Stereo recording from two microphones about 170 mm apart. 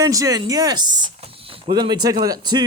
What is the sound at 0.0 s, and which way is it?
Speech, 20° right (ahead or behind).